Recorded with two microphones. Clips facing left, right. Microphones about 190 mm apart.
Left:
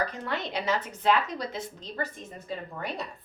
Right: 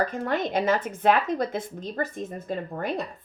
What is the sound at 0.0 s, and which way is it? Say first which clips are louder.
Speech: right 6 dB; 50° right (ahead or behind).